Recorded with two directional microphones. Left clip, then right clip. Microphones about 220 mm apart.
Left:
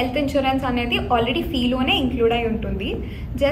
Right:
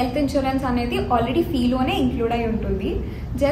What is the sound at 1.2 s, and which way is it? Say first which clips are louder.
Speech: right 1 dB; 45° right (ahead or behind).